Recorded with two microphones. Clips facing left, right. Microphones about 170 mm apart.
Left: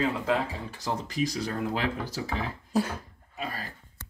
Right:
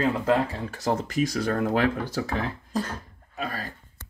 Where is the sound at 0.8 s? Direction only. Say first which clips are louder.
Right 5 dB; 55° right (ahead or behind).